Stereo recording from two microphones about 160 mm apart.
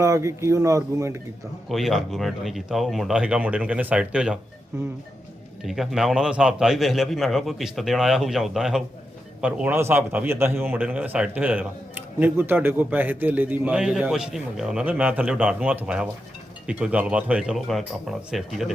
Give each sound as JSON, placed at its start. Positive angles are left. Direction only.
{"t": 0.0, "sound": "speech", "side_deg": -20}
{"t": 1.7, "sound": "a man's voice", "side_deg": 0}
{"t": 4.7, "sound": "a man's voice", "side_deg": -20}
{"t": 5.6, "sound": "a man's voice", "side_deg": 0}